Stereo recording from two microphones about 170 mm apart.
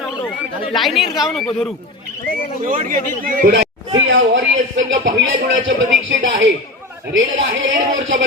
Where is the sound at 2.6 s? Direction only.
55° right (ahead or behind).